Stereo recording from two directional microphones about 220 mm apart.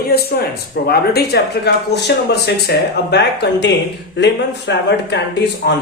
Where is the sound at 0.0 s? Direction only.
45° left (ahead or behind).